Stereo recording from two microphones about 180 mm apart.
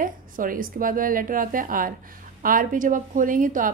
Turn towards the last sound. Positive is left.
turn(degrees=-50)  # may be behind; listen again after turning